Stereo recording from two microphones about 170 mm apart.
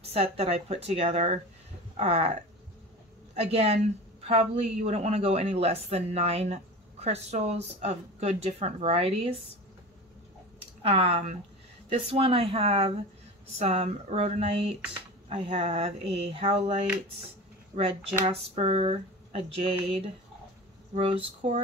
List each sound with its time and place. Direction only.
0.0 s speech: 35° right (ahead or behind)
3.3 s speech: 40° right (ahead or behind)
10.8 s speech: 35° right (ahead or behind)
18.2 s speech: 40° right (ahead or behind)
20.9 s speech: 35° right (ahead or behind)